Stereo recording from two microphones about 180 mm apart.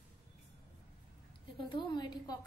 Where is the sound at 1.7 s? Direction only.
25° left (ahead or behind).